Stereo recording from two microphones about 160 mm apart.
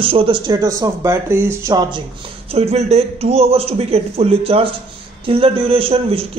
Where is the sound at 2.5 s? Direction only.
40° right (ahead or behind).